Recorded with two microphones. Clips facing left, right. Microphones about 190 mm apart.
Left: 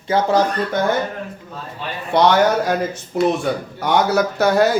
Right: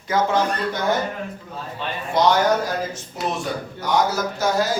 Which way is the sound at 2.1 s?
65° left (ahead or behind).